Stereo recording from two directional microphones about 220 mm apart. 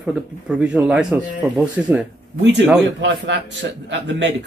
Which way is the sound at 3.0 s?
55° right (ahead or behind).